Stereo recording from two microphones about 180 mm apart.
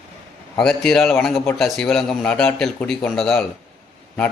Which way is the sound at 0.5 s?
5° left (ahead or behind).